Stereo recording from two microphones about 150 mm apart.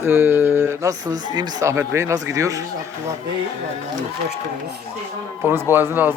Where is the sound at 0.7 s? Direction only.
20° right (ahead or behind).